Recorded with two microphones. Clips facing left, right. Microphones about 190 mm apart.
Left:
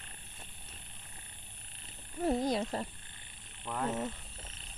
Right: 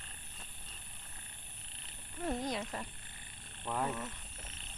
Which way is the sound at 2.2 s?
35° left (ahead or behind).